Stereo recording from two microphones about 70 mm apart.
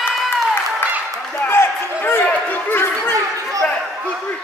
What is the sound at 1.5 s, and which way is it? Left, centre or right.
Chatter, left.